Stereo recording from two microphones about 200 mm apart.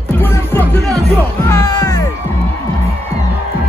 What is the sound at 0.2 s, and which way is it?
Music, 10° left (ahead or behind).